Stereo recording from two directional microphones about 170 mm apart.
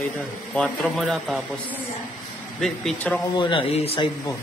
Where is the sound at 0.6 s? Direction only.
5° left (ahead or behind).